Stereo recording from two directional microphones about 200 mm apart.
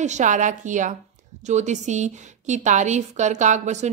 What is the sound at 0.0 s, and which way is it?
A woman's voice, 35° right (ahead or behind).